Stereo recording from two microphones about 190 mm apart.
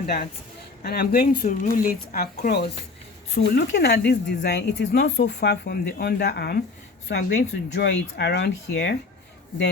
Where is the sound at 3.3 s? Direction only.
70° left (ahead or behind).